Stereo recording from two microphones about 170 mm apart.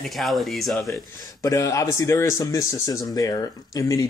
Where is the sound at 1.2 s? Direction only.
20° left (ahead or behind).